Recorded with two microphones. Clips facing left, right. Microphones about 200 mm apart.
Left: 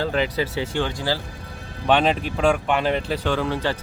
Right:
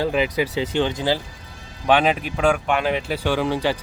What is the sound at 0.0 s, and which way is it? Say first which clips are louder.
Speech: right 2 dB; 15° right (ahead or behind).